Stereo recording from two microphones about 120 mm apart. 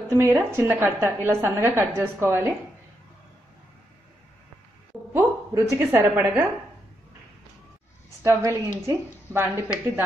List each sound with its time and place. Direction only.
0.1 s a woman's voice: 20° right (ahead or behind)
5.1 s a woman's voice: 25° right (ahead or behind)
8.2 s a woman's voice: 25° right (ahead or behind)